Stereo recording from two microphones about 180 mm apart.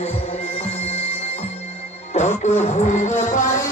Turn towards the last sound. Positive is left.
turn(degrees=40)  # may be behind; listen again after turning